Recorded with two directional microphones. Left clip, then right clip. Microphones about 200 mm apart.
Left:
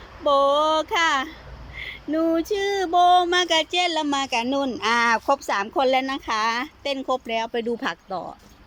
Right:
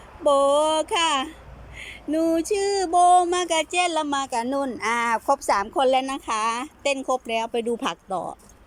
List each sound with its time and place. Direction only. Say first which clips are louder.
0.3 s speech: even; 10° right (ahead or behind)
1.8 s a sound: even; 5° right (ahead or behind)
5.0 s speech: left 1 dB; centre (ahead or behind)